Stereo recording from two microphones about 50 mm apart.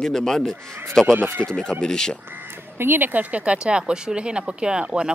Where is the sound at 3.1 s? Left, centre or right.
Right.